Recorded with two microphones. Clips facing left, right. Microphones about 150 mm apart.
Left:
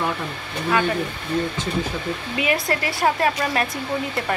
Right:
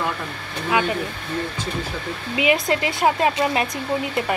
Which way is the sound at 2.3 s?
20° right (ahead or behind).